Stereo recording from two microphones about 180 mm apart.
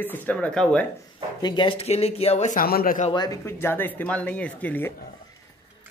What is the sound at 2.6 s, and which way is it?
Speech, 55° left (ahead or behind).